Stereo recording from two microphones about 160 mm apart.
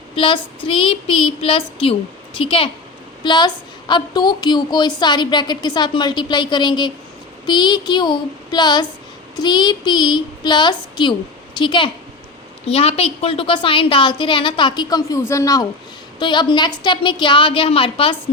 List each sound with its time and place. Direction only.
0.2 s a woman's voice: 35° left (ahead or behind)